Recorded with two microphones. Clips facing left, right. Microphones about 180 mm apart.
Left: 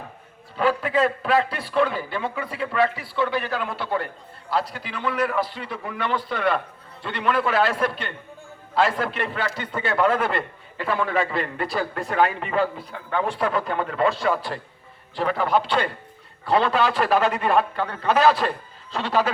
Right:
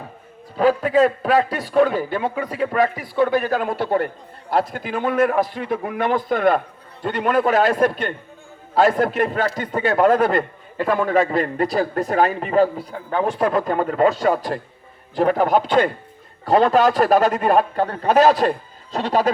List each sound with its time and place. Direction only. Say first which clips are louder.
0.5 s a man's voice: right 5 dB; 40° right (ahead or behind)